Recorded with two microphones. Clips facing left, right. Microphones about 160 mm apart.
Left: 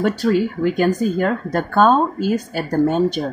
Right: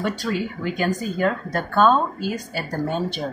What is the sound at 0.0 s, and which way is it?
Speech, 45° left (ahead or behind).